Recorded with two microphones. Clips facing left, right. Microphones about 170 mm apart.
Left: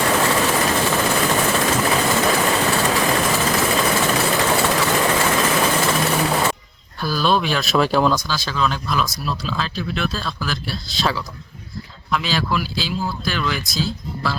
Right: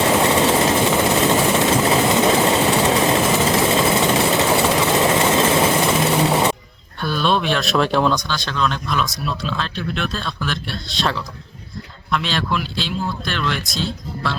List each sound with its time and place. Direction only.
0.0 s vehicle: 20° right (ahead or behind)
7.0 s speech: centre (ahead or behind)